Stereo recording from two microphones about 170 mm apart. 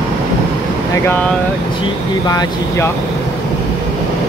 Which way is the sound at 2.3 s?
25° left (ahead or behind).